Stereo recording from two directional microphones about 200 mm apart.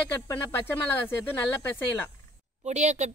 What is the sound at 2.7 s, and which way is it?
Speech, 35° right (ahead or behind).